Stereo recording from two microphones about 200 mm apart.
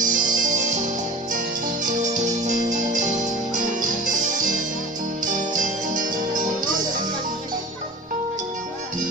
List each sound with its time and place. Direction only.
0.0 s music: 40° right (ahead or behind)